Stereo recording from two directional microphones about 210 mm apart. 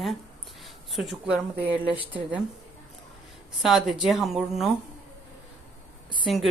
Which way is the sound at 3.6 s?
Centre (ahead or behind).